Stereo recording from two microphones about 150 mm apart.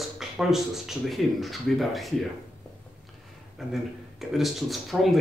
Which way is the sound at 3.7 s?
Centre (ahead or behind).